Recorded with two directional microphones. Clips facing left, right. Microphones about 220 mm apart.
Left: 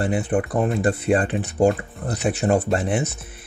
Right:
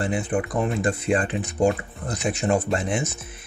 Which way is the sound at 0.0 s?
40° left (ahead or behind).